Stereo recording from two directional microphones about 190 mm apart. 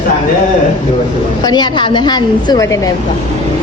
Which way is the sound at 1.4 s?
20° left (ahead or behind).